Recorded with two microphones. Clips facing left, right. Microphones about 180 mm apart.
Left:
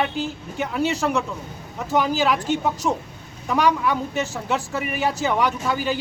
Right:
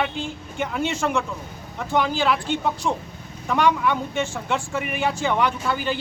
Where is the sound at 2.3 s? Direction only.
45° left (ahead or behind).